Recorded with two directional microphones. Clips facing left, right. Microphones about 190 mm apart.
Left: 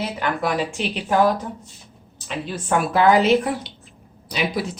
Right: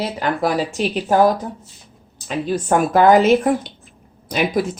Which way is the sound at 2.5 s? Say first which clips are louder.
Right 5 dB; 45° right (ahead or behind).